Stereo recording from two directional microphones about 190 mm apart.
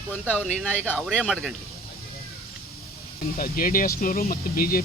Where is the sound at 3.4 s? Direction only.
50° left (ahead or behind).